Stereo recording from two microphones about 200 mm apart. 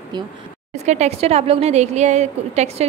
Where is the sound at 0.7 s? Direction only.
35° right (ahead or behind).